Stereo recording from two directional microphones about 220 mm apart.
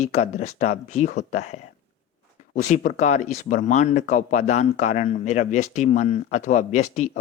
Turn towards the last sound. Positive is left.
turn(degrees=35)  # may be behind; listen again after turning